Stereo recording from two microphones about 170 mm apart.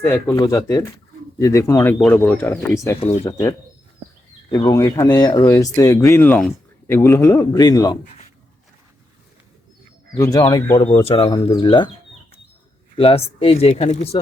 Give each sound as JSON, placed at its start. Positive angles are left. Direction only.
{"t": 0.0, "sound": "speech", "side_deg": 15}
{"t": 3.0, "sound": "speech", "side_deg": 40}
{"t": 4.5, "sound": "speech", "side_deg": 20}
{"t": 10.2, "sound": "speech", "side_deg": 20}
{"t": 11.0, "sound": "speech", "side_deg": 35}
{"t": 13.0, "sound": "speech", "side_deg": 35}